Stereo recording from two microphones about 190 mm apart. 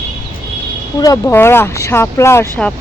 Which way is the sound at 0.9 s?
20° left (ahead or behind).